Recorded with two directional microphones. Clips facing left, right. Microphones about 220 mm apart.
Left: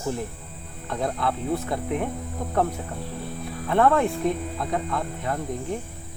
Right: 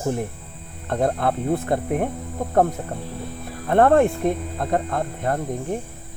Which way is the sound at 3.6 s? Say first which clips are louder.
Right 5 dB; 50° right (ahead or behind).